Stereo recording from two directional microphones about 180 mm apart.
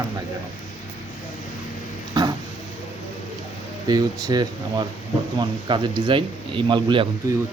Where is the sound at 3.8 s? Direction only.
20° right (ahead or behind).